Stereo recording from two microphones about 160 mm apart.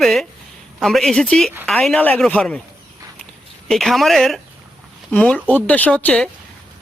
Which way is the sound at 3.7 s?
Centre (ahead or behind).